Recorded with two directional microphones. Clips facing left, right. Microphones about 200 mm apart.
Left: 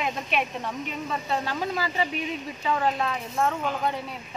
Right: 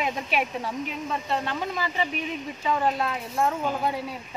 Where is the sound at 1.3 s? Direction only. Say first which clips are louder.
Left 1 dB; 5° left (ahead or behind).